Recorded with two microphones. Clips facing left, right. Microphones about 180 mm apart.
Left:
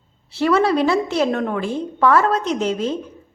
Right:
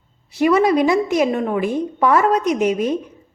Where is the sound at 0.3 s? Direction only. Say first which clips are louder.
Right 2 dB; 15° right (ahead or behind).